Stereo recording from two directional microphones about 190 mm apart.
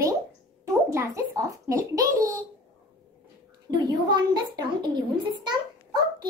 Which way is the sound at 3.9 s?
20° right (ahead or behind).